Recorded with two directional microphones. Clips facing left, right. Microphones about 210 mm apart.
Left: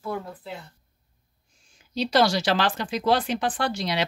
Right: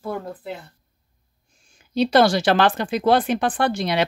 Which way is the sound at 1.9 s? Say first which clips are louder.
Right 5 dB; 55° right (ahead or behind).